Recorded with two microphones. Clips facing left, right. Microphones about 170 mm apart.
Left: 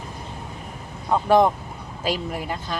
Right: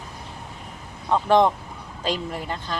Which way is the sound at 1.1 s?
10° left (ahead or behind).